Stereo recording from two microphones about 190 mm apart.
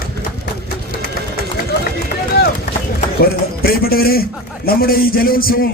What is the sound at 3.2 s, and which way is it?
A man's voice, 50° left (ahead or behind).